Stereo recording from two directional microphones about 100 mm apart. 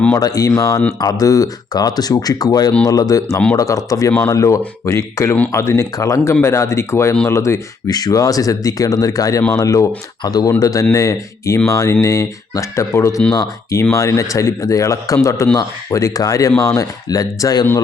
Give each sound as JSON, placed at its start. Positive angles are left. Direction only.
{"t": 0.2, "sound": "speech", "side_deg": 35}
{"t": 7.9, "sound": "speech", "side_deg": 40}